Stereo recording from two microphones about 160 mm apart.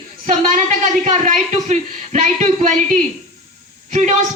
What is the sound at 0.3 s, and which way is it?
A woman's voice, 45° right (ahead or behind).